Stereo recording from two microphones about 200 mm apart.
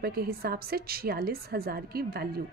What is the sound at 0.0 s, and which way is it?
A woman's voice, 50° right (ahead or behind).